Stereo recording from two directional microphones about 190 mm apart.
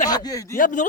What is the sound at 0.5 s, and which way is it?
Speech, 45° left (ahead or behind).